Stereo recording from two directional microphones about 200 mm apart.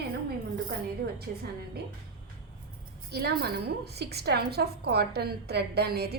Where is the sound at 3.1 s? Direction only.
50° right (ahead or behind).